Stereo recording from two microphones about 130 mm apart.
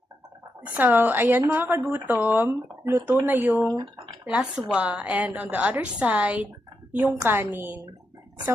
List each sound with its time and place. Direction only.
0.7 s a woman's voice: 15° right (ahead or behind)
4.3 s a woman's voice: 5° right (ahead or behind)
7.1 s a woman's voice: 20° right (ahead or behind)